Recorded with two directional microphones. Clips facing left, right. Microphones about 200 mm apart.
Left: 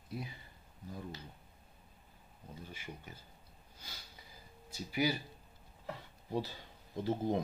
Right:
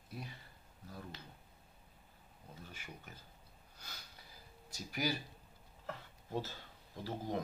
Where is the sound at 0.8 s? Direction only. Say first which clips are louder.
Left 5 dB; 15° left (ahead or behind).